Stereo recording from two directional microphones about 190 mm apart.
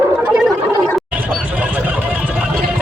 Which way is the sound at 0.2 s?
5° right (ahead or behind).